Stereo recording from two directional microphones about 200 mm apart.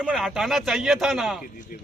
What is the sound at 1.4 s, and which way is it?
Speech, 45° left (ahead or behind).